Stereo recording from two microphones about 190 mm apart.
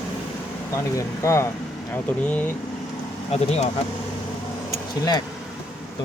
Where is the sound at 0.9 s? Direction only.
15° left (ahead or behind).